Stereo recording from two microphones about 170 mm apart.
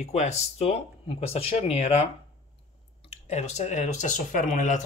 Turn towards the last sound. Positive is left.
turn(degrees=45)  # may be behind; listen again after turning